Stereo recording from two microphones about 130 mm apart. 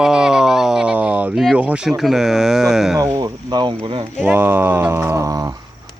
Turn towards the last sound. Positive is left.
turn(degrees=-25)  # may be behind; listen again after turning